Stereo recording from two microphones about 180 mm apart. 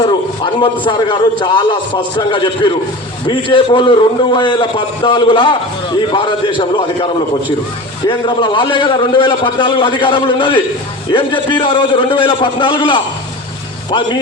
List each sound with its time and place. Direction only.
0.0 s a man's voice: 25° left (ahead or behind)